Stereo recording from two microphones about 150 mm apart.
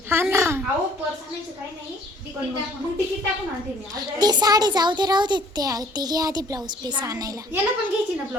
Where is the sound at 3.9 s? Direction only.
25° right (ahead or behind).